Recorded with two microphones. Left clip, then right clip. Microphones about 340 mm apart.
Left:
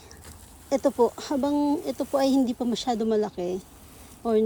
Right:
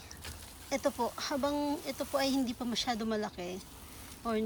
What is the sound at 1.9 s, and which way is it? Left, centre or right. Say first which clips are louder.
Speech: left 8 dB; centre.